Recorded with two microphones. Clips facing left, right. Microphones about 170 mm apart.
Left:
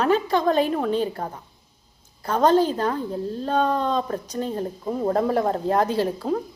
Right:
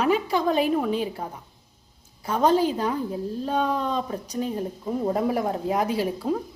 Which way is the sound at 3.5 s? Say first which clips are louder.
Left 3 dB; 35° left (ahead or behind).